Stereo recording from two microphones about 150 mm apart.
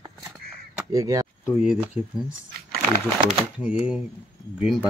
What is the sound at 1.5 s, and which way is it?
Speech, 5° right (ahead or behind).